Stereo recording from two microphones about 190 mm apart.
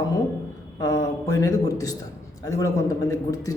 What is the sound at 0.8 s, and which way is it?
A man's voice, 15° left (ahead or behind).